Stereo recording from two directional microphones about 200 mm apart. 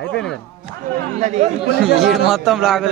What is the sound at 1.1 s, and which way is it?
Speech, 35° right (ahead or behind).